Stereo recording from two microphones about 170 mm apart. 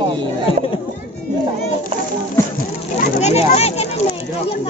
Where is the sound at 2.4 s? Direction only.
15° left (ahead or behind).